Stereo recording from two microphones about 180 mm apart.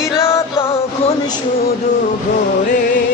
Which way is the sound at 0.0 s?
15° left (ahead or behind).